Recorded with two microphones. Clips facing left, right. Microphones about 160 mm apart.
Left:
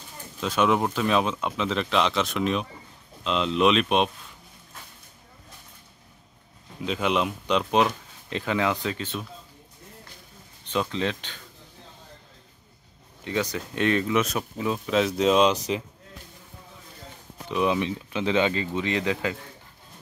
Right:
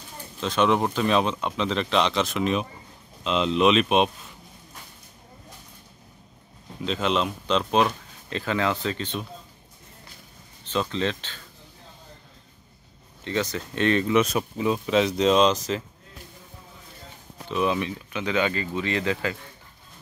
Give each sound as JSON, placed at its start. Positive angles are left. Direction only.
{"t": 0.4, "sound": "speech", "side_deg": 10}
{"t": 6.8, "sound": "speech", "side_deg": 10}
{"t": 10.6, "sound": "speech", "side_deg": 15}
{"t": 13.2, "sound": "speech", "side_deg": 10}
{"t": 17.5, "sound": "speech", "side_deg": 15}